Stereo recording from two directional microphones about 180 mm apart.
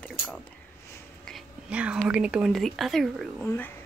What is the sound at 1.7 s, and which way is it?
Speech, 5° right (ahead or behind).